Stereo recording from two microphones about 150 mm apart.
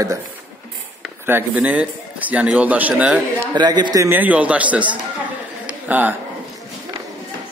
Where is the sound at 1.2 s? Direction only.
10° right (ahead or behind).